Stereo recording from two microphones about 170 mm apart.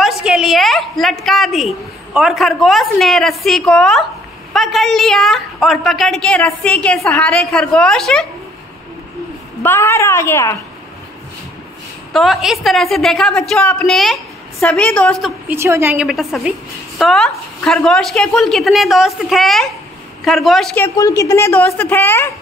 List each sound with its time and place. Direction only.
0.0 s a woman's voice: 5° right (ahead or behind)
9.6 s a woman's voice: 15° left (ahead or behind)
12.1 s a woman's voice: centre (ahead or behind)
15.5 s a woman's voice: 15° right (ahead or behind)
16.1 s a woman's voice: centre (ahead or behind)
20.8 s a woman's voice: 20° left (ahead or behind)